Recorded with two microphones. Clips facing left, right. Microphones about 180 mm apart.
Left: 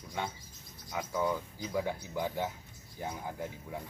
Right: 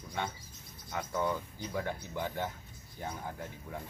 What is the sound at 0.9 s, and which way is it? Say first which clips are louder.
Speech: left 1 dB; centre (ahead or behind).